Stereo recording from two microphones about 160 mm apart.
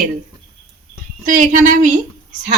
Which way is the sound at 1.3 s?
50° right (ahead or behind).